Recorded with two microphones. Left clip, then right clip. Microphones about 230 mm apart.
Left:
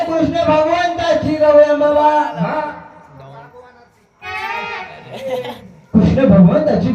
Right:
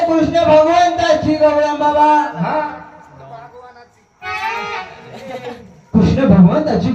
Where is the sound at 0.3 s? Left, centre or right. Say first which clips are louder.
Right 5 dB; right.